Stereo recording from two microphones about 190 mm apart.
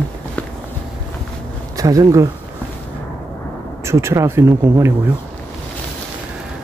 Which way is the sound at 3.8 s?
15° right (ahead or behind).